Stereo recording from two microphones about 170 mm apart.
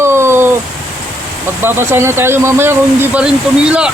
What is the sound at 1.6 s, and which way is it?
Speech, 15° right (ahead or behind).